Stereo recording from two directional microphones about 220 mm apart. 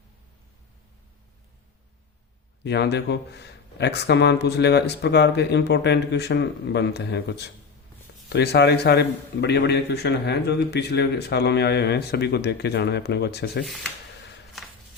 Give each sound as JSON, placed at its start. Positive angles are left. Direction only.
{"t": 2.6, "sound": "a man's voice", "side_deg": 50}